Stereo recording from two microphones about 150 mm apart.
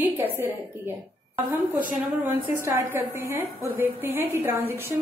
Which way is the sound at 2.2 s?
10° right (ahead or behind).